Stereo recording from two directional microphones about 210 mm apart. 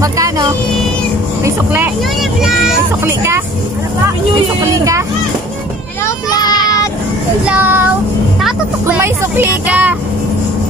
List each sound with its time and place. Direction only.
0.0 s speech: 15° right (ahead or behind)
3.1 s speech: 10° right (ahead or behind)
4.6 s speech: 15° right (ahead or behind)
6.0 s child singing: 20° left (ahead or behind)
7.4 s speech: 10° right (ahead or behind)